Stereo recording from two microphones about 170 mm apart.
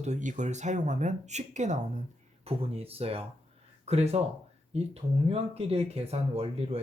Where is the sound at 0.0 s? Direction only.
45° right (ahead or behind).